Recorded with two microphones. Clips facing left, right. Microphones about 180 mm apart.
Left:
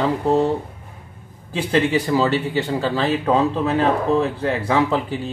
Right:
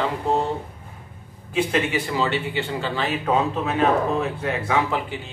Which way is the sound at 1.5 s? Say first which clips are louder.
Left 3 dB; 35° left (ahead or behind).